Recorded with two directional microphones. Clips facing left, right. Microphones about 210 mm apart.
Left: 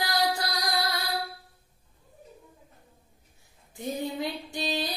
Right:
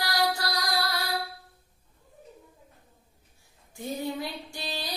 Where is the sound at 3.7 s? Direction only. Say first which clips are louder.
Left 1 dB; 20° left (ahead or behind).